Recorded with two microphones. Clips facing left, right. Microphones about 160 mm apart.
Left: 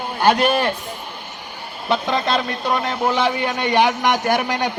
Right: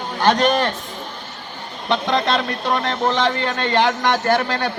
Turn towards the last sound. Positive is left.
turn(degrees=15)  # may be behind; listen again after turning